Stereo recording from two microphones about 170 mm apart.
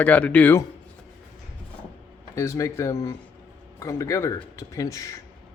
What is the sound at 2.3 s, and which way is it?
Speech, 15° left (ahead or behind).